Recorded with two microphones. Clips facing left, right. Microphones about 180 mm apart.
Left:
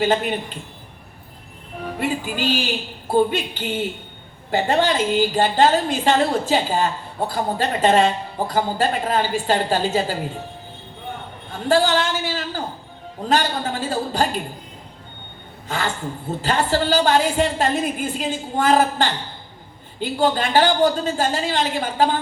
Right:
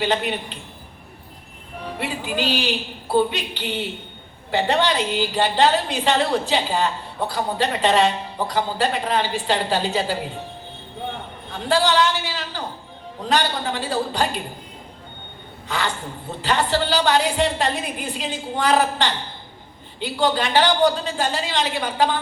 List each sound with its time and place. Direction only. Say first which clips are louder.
0.0 s a woman's voice: left 3 dB; 45° left (ahead or behind)
2.0 s a woman's voice: left 2 dB; 45° left (ahead or behind)
11.5 s a woman's voice: left 1 dB; 45° left (ahead or behind)
16.4 s a woman's voice: left 1 dB; 45° left (ahead or behind)